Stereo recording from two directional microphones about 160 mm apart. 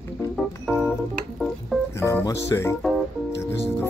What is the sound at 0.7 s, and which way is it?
Organ, 5° right (ahead or behind).